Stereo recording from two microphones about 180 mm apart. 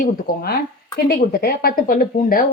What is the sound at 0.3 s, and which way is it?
Speech, 60° left (ahead or behind).